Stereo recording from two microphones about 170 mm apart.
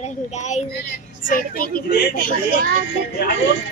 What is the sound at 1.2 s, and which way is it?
Speech, 55° left (ahead or behind).